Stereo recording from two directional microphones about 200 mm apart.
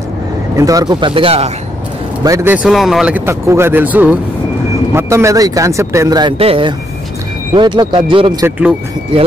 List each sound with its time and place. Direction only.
0.6 s speech: 15° right (ahead or behind)
2.2 s speech: 15° right (ahead or behind)